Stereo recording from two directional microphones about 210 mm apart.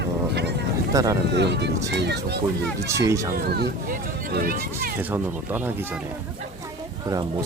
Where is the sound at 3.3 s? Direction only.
50° right (ahead or behind).